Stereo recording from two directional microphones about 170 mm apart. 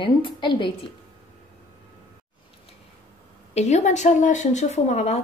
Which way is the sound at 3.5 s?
40° left (ahead or behind).